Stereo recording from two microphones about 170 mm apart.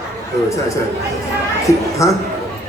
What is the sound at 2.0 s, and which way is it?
Speech, 20° left (ahead or behind).